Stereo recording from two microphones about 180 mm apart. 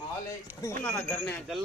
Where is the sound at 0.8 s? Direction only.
10° left (ahead or behind).